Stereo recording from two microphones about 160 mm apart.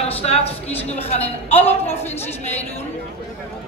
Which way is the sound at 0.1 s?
40° left (ahead or behind).